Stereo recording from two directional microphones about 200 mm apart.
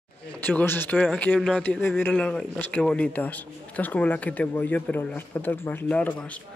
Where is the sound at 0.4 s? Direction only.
10° left (ahead or behind).